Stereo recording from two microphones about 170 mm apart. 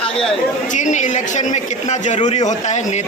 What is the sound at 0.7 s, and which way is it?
A man's voice, 45° left (ahead or behind).